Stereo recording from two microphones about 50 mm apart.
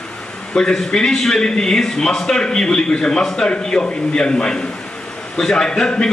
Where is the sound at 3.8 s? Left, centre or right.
Centre.